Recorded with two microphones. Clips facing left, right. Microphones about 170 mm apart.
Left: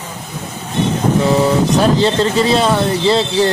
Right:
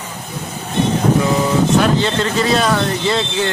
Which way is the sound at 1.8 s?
30° left (ahead or behind).